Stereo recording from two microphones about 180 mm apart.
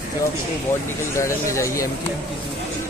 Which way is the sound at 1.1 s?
15° left (ahead or behind).